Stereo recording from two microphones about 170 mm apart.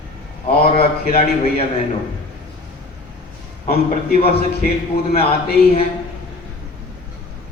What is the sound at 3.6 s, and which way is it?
Speech, 35° left (ahead or behind).